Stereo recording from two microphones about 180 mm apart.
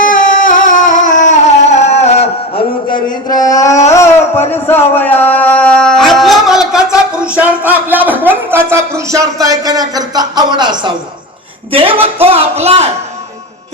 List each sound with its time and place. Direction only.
0.0 s music: 45° left (ahead or behind)
2.9 s a sound: 20° left (ahead or behind)
4.5 s music: 10° left (ahead or behind); by 10.9 s 25° right (ahead or behind)
11.7 s speech: 30° right (ahead or behind)